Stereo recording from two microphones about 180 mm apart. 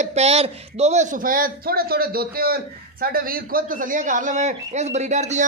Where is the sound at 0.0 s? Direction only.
35° right (ahead or behind).